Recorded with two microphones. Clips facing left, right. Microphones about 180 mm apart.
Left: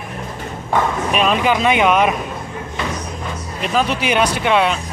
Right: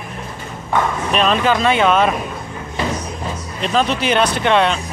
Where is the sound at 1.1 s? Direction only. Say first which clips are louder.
Right 1 dB; 10° left (ahead or behind).